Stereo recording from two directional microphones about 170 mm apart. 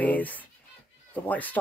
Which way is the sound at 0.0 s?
10° left (ahead or behind).